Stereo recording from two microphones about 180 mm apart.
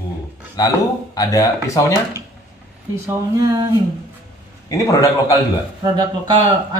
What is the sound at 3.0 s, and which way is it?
Speech, 20° right (ahead or behind).